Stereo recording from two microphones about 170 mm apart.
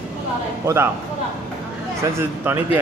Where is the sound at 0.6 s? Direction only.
15° right (ahead or behind).